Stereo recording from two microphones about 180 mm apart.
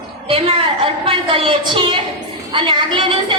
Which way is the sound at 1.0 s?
30° right (ahead or behind).